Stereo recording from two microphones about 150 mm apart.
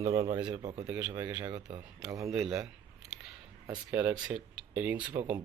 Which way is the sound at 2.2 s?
Centre (ahead or behind).